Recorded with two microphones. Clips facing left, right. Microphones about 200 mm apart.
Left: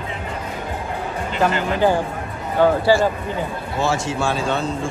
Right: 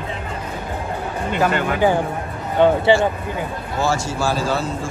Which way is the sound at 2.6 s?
25° right (ahead or behind).